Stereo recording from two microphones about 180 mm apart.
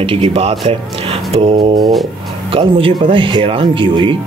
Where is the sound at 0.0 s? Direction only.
30° right (ahead or behind).